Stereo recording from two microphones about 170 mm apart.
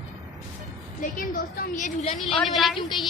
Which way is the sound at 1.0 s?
50° left (ahead or behind).